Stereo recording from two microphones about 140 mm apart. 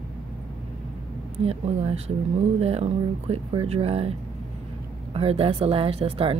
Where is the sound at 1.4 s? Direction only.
50° right (ahead or behind).